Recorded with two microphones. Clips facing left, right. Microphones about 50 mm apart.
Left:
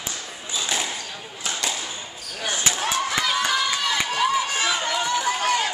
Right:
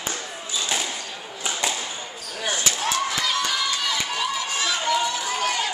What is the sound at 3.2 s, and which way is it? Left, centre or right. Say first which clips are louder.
Run: left 2 dB; centre.